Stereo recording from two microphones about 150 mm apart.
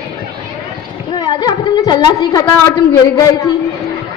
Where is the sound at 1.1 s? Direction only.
30° left (ahead or behind).